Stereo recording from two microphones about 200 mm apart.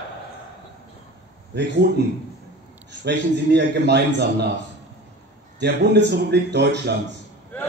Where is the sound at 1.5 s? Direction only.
60° right (ahead or behind).